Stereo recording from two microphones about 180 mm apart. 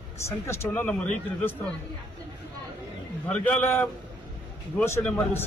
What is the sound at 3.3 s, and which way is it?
A man's voice, 10° left (ahead or behind).